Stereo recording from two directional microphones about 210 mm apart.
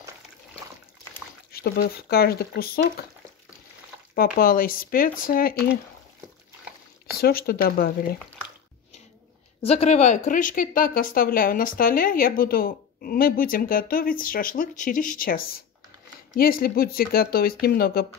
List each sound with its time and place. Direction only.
1.5 s speech: 45° left (ahead or behind)
4.1 s speech: 45° left (ahead or behind)
7.2 s speech: 45° left (ahead or behind)
9.6 s speech: 30° left (ahead or behind); by 18.0 s 45° left (ahead or behind)